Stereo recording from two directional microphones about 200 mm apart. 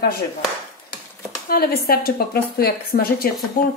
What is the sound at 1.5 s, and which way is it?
Speech, 50° left (ahead or behind).